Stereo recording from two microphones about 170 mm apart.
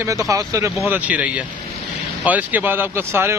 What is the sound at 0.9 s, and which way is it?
Speech, 10° right (ahead or behind).